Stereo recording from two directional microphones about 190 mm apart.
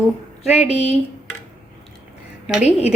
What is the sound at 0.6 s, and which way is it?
Speech, 35° left (ahead or behind).